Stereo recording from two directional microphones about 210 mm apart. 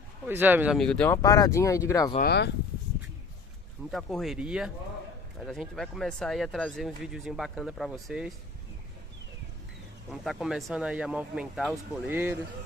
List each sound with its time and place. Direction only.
0.3 s speech: 10° right (ahead or behind); by 2.1 s 15° left (ahead or behind)
2.1 s speech: 50° left (ahead or behind)
3.9 s speech: centre (ahead or behind)
10.2 s speech: centre (ahead or behind)